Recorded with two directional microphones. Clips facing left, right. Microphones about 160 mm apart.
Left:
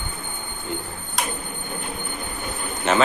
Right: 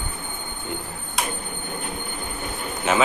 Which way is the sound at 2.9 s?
10° right (ahead or behind).